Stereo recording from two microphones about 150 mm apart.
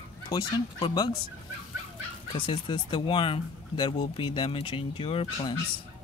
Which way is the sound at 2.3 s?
35° left (ahead or behind).